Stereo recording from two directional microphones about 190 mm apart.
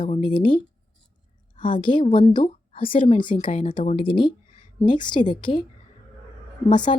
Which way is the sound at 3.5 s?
40° left (ahead or behind).